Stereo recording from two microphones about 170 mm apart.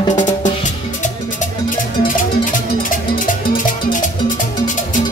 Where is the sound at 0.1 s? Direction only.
45° left (ahead or behind).